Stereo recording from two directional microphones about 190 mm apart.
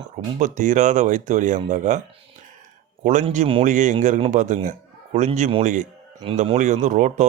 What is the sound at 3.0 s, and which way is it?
Speech, 40° right (ahead or behind).